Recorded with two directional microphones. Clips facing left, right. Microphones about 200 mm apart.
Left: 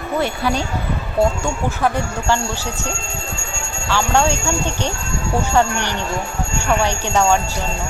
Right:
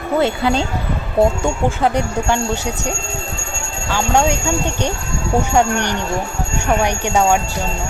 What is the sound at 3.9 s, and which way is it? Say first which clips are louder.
Speech: right 1 dB; 15° right (ahead or behind).